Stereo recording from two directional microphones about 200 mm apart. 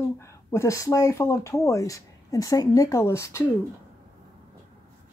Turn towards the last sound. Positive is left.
turn(degrees=15)  # may be behind; listen again after turning